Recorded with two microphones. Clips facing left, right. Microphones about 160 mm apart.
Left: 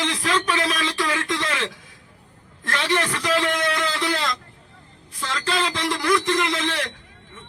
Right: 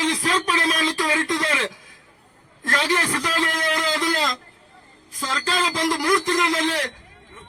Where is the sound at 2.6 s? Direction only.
40° right (ahead or behind).